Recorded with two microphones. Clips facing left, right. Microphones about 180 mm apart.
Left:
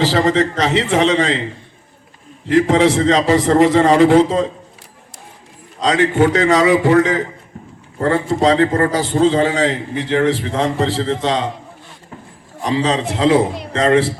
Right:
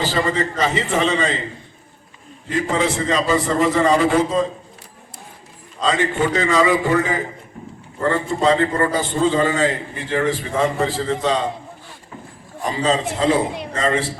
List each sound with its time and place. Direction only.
0.0 s a man's voice: 80° left
2.5 s a man's voice: 75° left (ahead or behind)
5.8 s a man's voice: 75° left (ahead or behind)
12.6 s a man's voice: 80° left